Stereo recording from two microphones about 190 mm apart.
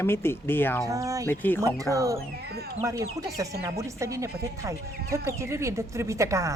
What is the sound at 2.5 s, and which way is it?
Speech, 55° right (ahead or behind).